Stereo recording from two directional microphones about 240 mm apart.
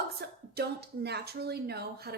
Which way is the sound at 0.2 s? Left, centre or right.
Right.